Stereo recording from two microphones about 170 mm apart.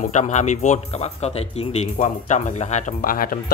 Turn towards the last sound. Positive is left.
turn(degrees=55)  # may be behind; listen again after turning